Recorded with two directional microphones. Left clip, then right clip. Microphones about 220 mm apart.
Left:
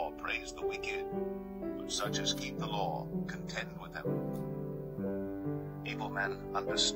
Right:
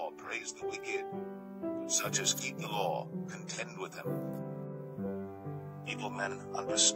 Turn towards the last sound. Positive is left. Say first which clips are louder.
# right 1 dB
turn(degrees=-25)  # may be behind; listen again after turning